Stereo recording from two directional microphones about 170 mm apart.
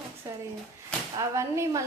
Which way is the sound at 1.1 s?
20° right (ahead or behind).